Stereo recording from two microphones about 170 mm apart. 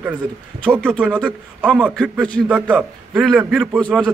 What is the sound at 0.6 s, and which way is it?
Speech, 5° left (ahead or behind).